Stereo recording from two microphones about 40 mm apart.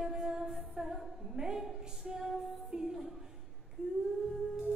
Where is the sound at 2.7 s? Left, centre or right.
Centre.